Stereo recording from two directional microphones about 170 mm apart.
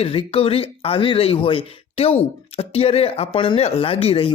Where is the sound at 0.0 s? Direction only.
35° left (ahead or behind).